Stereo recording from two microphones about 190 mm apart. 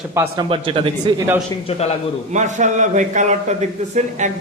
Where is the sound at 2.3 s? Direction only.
40° right (ahead or behind).